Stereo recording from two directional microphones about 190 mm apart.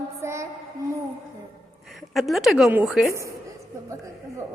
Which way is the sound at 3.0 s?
15° right (ahead or behind).